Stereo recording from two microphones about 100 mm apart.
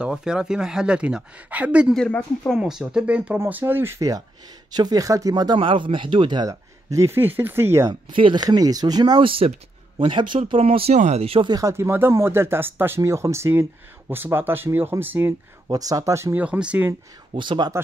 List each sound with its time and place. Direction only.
0.0 s speech: 5° right (ahead or behind)
2.0 s speech: 10° left (ahead or behind)
2.6 s speech: 10° right (ahead or behind)
3.3 s speech: 20° right (ahead or behind)
4.7 s speech: 40° right (ahead or behind)
5.6 s speech: 55° right (ahead or behind)
6.5 s speech: 30° right (ahead or behind)
7.9 s speech: 55° right (ahead or behind)
10.4 s speech: 75° right (ahead or behind)
11.6 s speech: 25° right (ahead or behind)
15.7 s speech: 35° right (ahead or behind)
16.3 s speech: 10° right (ahead or behind)
17.3 s speech: 55° right (ahead or behind)